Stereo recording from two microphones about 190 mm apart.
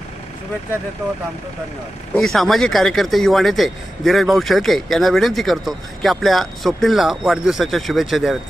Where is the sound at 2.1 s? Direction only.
Centre (ahead or behind).